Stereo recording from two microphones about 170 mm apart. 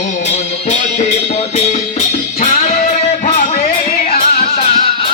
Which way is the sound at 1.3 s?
40° left (ahead or behind).